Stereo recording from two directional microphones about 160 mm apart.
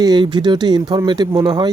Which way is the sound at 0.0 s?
25° right (ahead or behind).